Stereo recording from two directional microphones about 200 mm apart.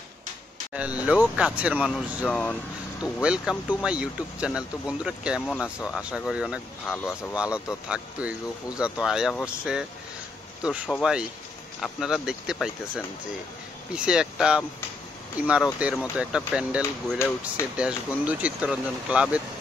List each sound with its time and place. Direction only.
0.7 s speech: 5° right (ahead or behind)